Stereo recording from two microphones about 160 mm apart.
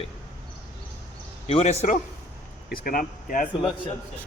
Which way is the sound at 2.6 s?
65° left (ahead or behind).